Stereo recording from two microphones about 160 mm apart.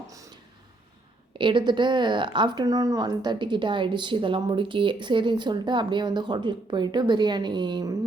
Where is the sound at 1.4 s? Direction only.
30° right (ahead or behind).